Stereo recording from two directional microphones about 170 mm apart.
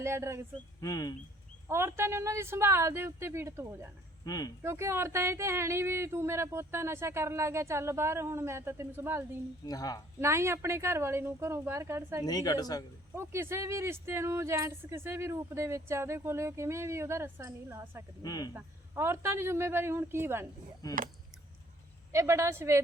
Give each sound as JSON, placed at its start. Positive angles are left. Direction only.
{"t": 0.0, "sound": "speech", "side_deg": -15}
{"t": 0.8, "sound": "speech", "side_deg": 20}
{"t": 1.6, "sound": "speech", "side_deg": -15}
{"t": 4.3, "sound": "speech", "side_deg": 20}
{"t": 4.6, "sound": "speech", "side_deg": -15}
{"t": 9.6, "sound": "speech", "side_deg": 20}
{"t": 10.2, "sound": "speech", "side_deg": -15}
{"t": 12.2, "sound": "speech", "side_deg": 20}
{"t": 13.1, "sound": "speech", "side_deg": -15}
{"t": 18.2, "sound": "speech", "side_deg": 25}
{"t": 18.5, "sound": "speech", "side_deg": -15}
{"t": 22.1, "sound": "speech", "side_deg": -15}